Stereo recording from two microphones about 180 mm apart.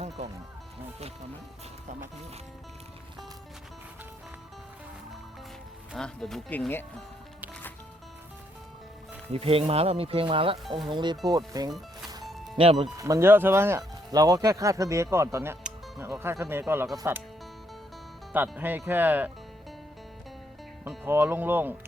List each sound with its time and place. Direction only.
5.9 s speech: 5° left (ahead or behind)
9.3 s speech: 30° right (ahead or behind)
12.2 s music: centre (ahead or behind)
12.5 s speech: 30° right (ahead or behind)
13.0 s speech: 15° right (ahead or behind)
18.3 s speech: 10° right (ahead or behind)
20.8 s speech: 10° right (ahead or behind)